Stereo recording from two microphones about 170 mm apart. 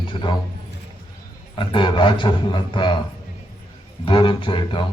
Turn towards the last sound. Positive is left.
turn(degrees=30)  # may be behind; listen again after turning